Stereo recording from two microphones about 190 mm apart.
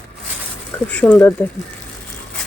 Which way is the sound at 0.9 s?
10° left (ahead or behind).